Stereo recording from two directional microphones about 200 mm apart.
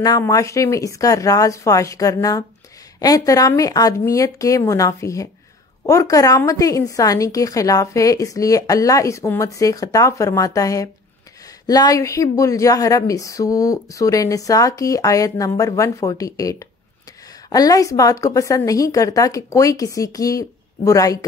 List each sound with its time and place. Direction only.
0.0 s a woman's voice: 15° left (ahead or behind)